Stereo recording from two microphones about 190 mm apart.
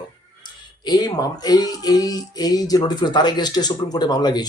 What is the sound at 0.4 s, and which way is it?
A child's voice, 20° left (ahead or behind).